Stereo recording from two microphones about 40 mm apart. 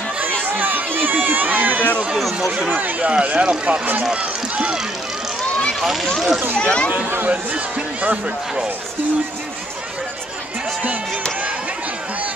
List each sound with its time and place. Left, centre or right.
0.4 s run: right
2.1 s a sound: centre
2.7 s speech: right
3.1 s speech: right
5.8 s speech: centre
6.6 s speech: left
7.2 s speech: right